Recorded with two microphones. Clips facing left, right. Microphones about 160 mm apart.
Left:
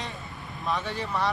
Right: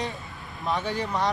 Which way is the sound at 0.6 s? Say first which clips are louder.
Right 3 dB; 20° right (ahead or behind).